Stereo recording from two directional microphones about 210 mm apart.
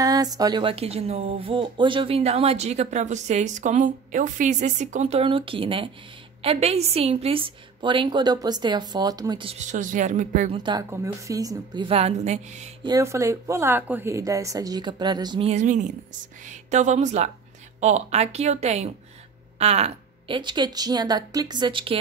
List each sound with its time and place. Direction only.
0.0 s speech: 15° right (ahead or behind); by 10.6 s 35° right (ahead or behind)
10.6 s speech: 20° right (ahead or behind)
12.8 s a woman's voice: 15° right (ahead or behind)